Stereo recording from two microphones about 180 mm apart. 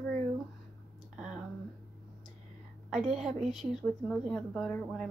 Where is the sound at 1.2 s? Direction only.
5° right (ahead or behind).